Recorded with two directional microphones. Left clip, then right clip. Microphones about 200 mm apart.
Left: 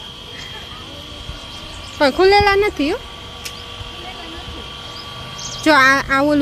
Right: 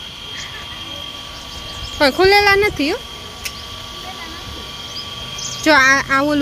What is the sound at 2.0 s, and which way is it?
Speech, 5° left (ahead or behind).